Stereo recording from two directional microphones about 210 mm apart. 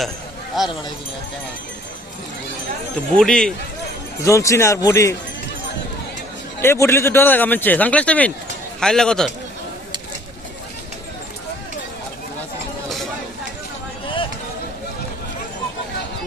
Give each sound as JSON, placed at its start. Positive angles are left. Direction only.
{"t": 0.6, "sound": "a man's voice", "side_deg": 0}
{"t": 3.2, "sound": "a man's voice", "side_deg": 5}
{"t": 4.2, "sound": "a man's voice", "side_deg": 15}
{"t": 6.6, "sound": "a man's voice", "side_deg": 10}